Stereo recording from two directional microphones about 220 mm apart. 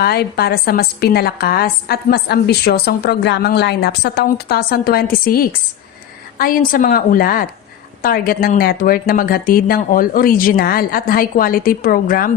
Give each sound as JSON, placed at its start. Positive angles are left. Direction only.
{"t": 0.0, "sound": "a woman's voice", "side_deg": 45}